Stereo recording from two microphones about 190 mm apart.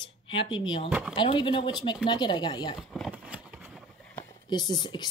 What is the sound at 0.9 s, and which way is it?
Speech, 5° right (ahead or behind).